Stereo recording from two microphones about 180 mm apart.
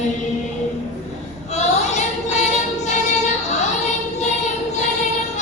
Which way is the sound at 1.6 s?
40° left (ahead or behind).